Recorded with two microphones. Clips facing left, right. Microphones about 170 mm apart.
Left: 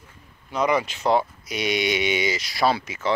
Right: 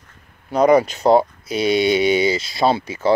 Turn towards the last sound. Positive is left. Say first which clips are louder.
# right 6 dB
turn(degrees=-30)  # may be behind; listen again after turning